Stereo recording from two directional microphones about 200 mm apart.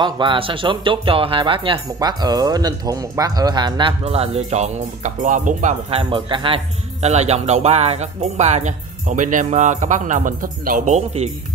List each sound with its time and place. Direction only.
0.0 s speech: 25° right (ahead or behind)